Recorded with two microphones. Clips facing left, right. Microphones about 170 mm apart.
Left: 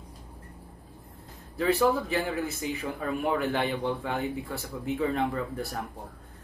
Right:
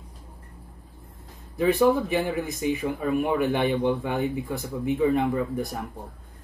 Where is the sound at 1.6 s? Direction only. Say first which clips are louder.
Right 4 dB; 15° right (ahead or behind).